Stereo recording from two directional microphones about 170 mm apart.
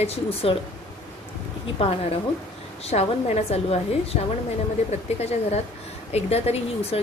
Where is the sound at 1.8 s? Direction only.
35° left (ahead or behind).